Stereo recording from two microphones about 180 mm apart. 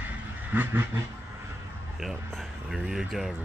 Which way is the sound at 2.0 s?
Centre (ahead or behind).